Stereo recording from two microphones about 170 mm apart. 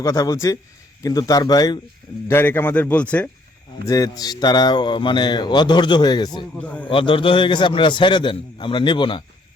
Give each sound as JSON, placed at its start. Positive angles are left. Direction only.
{"t": 0.0, "sound": "speech", "side_deg": 20}
{"t": 3.8, "sound": "speech", "side_deg": 20}
{"t": 6.6, "sound": "speech", "side_deg": 10}
{"t": 6.8, "sound": "speech", "side_deg": 30}